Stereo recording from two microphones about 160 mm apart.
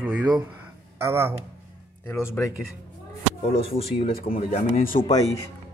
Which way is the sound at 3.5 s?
35° left (ahead or behind).